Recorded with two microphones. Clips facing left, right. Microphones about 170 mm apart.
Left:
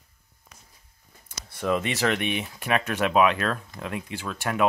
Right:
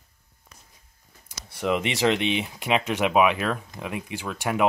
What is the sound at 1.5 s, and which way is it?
Speech, 15° right (ahead or behind).